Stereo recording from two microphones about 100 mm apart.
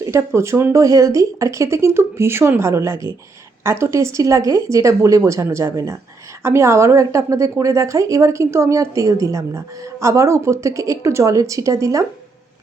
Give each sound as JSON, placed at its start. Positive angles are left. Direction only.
{"t": 0.3, "sound": "a woman's voice", "side_deg": -25}